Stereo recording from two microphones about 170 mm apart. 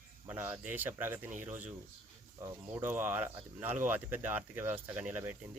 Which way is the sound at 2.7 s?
10° right (ahead or behind).